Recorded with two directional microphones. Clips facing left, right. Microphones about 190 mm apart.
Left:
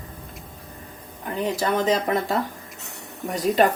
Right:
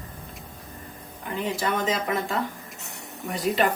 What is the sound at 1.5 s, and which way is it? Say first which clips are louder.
Speech: left 6 dB; 40° left (ahead or behind).